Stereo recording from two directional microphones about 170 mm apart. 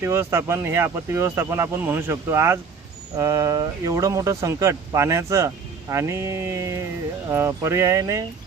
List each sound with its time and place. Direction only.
0.0 s speech: 15° right (ahead or behind)